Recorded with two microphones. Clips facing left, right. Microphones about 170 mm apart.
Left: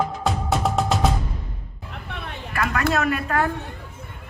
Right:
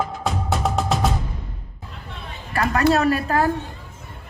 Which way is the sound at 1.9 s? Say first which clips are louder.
Left 3 dB; 65° left (ahead or behind).